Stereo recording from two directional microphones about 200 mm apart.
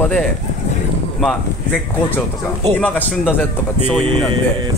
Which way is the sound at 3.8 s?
30° right (ahead or behind).